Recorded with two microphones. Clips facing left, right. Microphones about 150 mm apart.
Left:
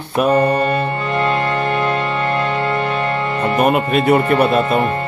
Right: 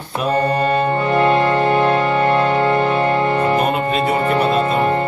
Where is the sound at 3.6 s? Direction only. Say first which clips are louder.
Left 3 dB; 60° left (ahead or behind).